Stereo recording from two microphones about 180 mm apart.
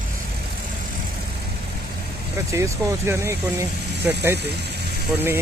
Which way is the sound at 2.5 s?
15° right (ahead or behind).